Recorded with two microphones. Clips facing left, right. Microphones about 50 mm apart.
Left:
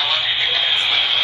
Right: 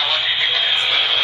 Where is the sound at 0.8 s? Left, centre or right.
Centre.